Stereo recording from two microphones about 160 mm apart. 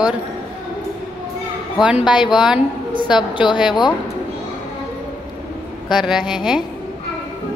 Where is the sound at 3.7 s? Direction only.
30° left (ahead or behind).